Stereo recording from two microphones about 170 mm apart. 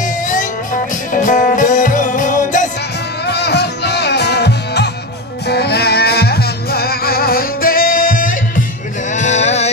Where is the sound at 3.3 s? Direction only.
75° left (ahead or behind); by 8.3 s 55° left (ahead or behind).